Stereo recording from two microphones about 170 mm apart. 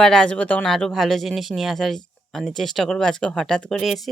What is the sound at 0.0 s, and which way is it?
Speech, 5° left (ahead or behind).